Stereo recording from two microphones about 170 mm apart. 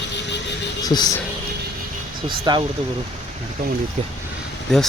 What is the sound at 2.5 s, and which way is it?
Speech, 25° right (ahead or behind).